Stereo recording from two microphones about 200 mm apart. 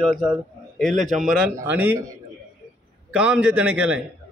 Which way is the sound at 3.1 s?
5° right (ahead or behind).